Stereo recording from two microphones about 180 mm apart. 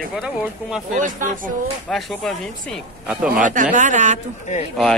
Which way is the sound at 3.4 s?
45° right (ahead or behind).